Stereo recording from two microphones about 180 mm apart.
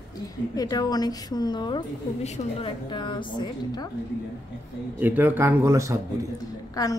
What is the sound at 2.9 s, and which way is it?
A woman's voice, 25° left (ahead or behind).